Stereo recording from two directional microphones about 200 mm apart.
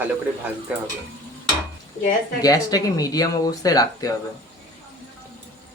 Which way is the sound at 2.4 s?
20° left (ahead or behind).